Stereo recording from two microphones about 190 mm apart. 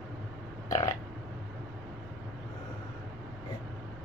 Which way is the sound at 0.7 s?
20° left (ahead or behind).